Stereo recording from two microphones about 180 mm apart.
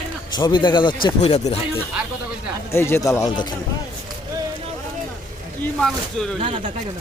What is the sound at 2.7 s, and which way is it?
Speech, 15° left (ahead or behind).